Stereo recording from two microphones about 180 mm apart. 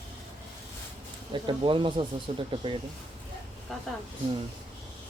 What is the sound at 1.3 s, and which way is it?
Speech, 25° right (ahead or behind).